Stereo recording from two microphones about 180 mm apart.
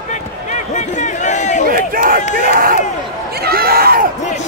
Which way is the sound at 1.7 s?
50° right (ahead or behind).